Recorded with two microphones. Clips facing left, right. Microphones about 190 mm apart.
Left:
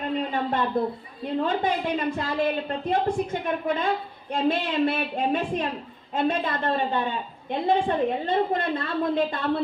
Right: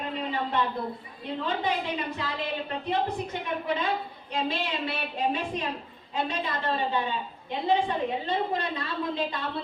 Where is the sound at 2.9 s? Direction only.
50° left (ahead or behind).